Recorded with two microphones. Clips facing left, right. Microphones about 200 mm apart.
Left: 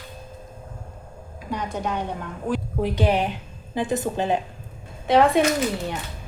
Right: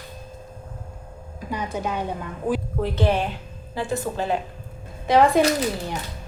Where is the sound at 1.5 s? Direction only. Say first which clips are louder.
Even; 5° right (ahead or behind).